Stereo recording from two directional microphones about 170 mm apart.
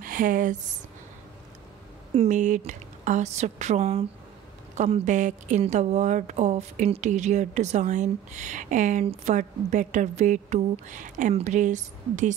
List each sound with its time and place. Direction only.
0.0 s speech: 55° right (ahead or behind)
2.1 s speech: 45° right (ahead or behind)